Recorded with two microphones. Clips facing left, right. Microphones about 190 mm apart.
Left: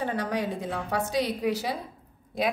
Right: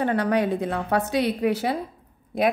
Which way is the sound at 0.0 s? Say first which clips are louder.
Right 7 dB; 60° right (ahead or behind).